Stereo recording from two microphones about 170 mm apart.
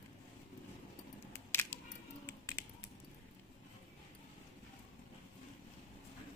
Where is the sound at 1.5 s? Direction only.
10° left (ahead or behind).